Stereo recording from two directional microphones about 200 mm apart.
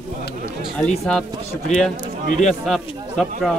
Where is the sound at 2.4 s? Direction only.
Centre (ahead or behind).